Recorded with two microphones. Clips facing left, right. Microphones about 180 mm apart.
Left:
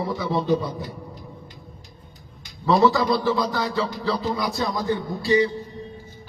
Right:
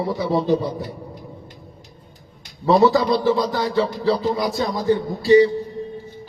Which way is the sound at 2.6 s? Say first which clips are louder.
Right 3 dB; 35° right (ahead or behind).